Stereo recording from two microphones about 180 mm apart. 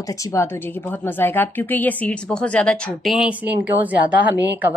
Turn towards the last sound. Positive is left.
turn(degrees=-10)  # may be behind; listen again after turning